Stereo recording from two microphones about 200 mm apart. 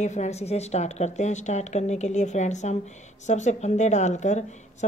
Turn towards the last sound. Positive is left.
turn(degrees=35)  # may be behind; listen again after turning